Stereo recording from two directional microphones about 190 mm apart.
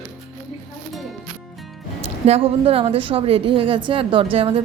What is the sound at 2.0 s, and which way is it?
A woman's voice, 35° right (ahead or behind).